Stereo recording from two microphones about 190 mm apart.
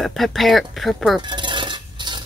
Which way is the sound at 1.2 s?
25° right (ahead or behind).